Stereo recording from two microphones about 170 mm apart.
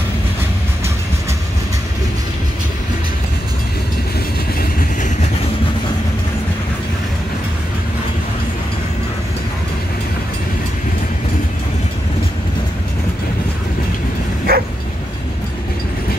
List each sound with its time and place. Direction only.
4.6 s vehicle: 60° left (ahead or behind)
14.5 s bow-wow: 65° right (ahead or behind)